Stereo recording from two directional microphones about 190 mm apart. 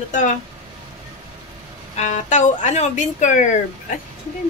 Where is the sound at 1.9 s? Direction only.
40° left (ahead or behind).